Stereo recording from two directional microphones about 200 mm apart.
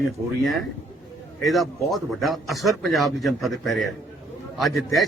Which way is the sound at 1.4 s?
Centre (ahead or behind).